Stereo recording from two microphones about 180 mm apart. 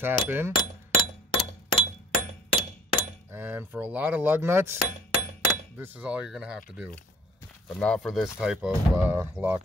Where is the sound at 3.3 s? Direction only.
10° right (ahead or behind).